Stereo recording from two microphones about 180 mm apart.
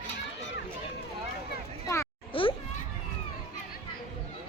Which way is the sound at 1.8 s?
15° left (ahead or behind).